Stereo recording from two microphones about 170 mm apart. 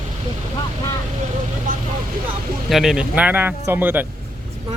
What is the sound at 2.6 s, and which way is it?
Speech, centre (ahead or behind).